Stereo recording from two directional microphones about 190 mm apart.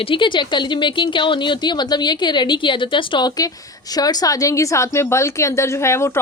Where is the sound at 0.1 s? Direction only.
25° left (ahead or behind).